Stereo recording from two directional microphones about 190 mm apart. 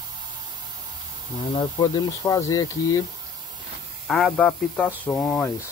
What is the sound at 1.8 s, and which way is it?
Speech, 20° left (ahead or behind).